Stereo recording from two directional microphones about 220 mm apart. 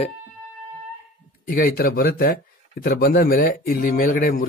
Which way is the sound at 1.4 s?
40° left (ahead or behind).